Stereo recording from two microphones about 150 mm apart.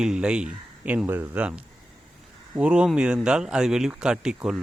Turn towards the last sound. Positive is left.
turn(degrees=-5)  # may be behind; listen again after turning